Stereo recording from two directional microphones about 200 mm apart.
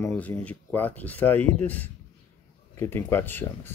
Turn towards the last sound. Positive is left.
turn(degrees=10)  # may be behind; listen again after turning